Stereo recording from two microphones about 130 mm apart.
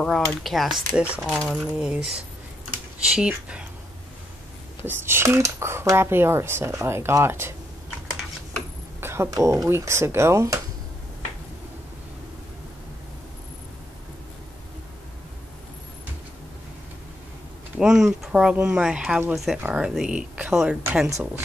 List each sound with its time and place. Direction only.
0.0 s speech: centre (ahead or behind)
1.3 s speech: 5° left (ahead or behind)
4.8 s speech: 20° right (ahead or behind)
9.0 s speech: 20° right (ahead or behind)
17.7 s speech: 5° right (ahead or behind)